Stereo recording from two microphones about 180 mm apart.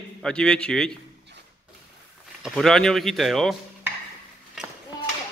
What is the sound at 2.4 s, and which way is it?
A man's voice, centre (ahead or behind).